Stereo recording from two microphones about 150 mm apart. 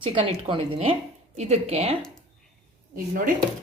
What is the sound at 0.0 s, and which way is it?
Speech, 35° right (ahead or behind).